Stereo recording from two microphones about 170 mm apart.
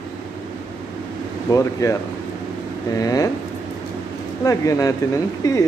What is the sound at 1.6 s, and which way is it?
Speech, 15° left (ahead or behind).